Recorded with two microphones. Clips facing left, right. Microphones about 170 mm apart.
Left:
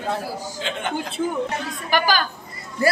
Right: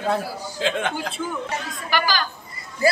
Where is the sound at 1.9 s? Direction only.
50° left (ahead or behind).